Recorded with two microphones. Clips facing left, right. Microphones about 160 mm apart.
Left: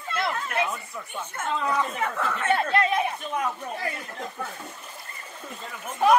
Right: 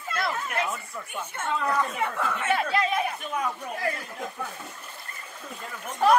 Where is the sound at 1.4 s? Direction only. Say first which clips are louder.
Even; 5° left (ahead or behind).